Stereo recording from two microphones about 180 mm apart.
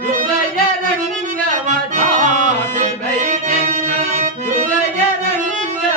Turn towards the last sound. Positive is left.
turn(degrees=-45)  # may be behind; listen again after turning